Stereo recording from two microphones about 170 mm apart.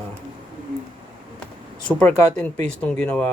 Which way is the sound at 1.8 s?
5° left (ahead or behind).